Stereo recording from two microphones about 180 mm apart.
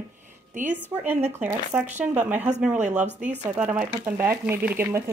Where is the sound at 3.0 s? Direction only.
40° right (ahead or behind).